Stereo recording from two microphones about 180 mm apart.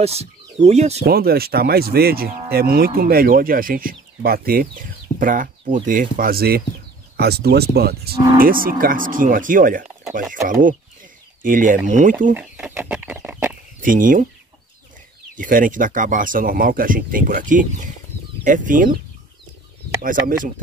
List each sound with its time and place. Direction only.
0.0 s speech: 35° right (ahead or behind)
1.0 s speech: 60° right (ahead or behind)
8.4 s speech: 50° right (ahead or behind)
12.4 s chicken: 10° right (ahead or behind)
13.7 s speech: 50° right (ahead or behind)
15.3 s speech: 50° right (ahead or behind)
20.0 s speech: 50° right (ahead or behind)